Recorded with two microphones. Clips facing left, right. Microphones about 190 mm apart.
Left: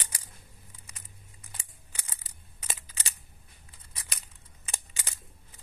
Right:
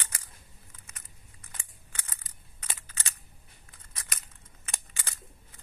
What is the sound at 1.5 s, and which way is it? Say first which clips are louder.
Scissors: even; 10° left (ahead or behind).